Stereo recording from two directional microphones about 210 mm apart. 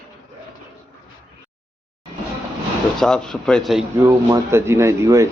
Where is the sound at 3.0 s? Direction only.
5° left (ahead or behind).